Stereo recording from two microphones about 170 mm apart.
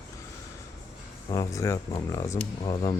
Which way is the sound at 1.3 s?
20° left (ahead or behind).